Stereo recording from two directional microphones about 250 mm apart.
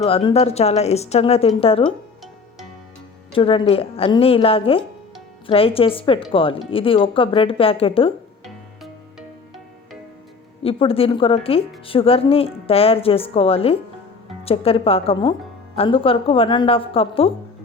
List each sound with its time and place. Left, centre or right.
0.0 s a woman's voice: left
3.3 s a woman's voice: left
10.6 s a woman's voice: left